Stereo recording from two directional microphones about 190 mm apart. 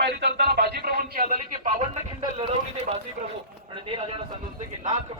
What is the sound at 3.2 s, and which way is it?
Speech, 50° right (ahead or behind).